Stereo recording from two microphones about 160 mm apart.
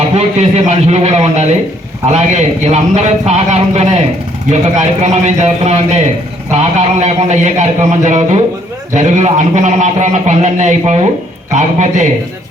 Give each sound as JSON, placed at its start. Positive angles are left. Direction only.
{"t": 0.1, "sound": "a man's voice", "side_deg": -40}
{"t": 2.6, "sound": "a man's voice", "side_deg": -45}